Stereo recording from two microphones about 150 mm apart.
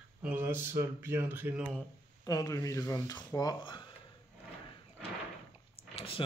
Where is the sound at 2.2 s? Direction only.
25° left (ahead or behind).